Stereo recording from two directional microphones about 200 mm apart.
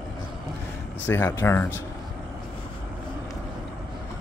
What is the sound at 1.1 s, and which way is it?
Speech, 10° left (ahead or behind).